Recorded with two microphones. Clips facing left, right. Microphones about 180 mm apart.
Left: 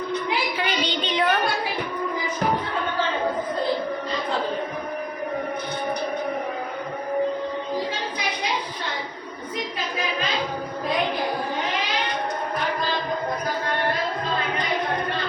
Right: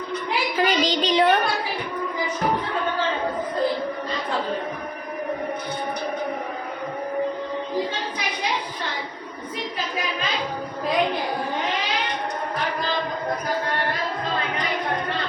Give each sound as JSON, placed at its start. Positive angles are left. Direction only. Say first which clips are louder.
{"t": 0.5, "sound": "child singing", "louder": "right 4 dB", "side_deg": -40}